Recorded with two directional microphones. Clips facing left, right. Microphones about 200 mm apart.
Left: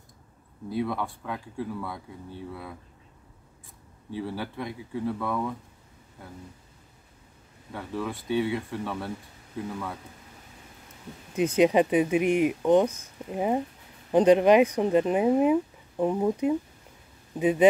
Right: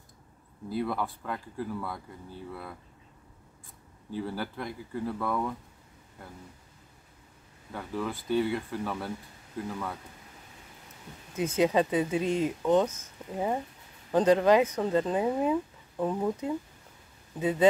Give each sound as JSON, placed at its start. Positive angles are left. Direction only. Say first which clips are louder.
{"t": 0.7, "sound": "speech", "louder": "left 2 dB", "side_deg": 0}
{"t": 4.2, "sound": "speech", "louder": "left 1 dB", "side_deg": 0}
{"t": 7.7, "sound": "speech", "louder": "left 1 dB", "side_deg": 0}
{"t": 11.3, "sound": "speech", "louder": "left 4 dB", "side_deg": 15}